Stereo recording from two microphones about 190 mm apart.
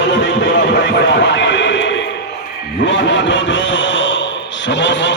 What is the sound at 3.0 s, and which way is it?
Speech, 75° left (ahead or behind).